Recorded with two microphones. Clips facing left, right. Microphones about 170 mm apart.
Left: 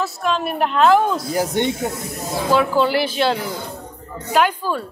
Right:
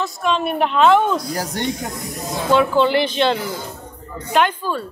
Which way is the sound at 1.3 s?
20° left (ahead or behind).